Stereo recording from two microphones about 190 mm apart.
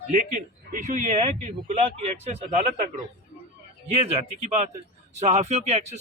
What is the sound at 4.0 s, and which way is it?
A man's voice, 35° right (ahead or behind).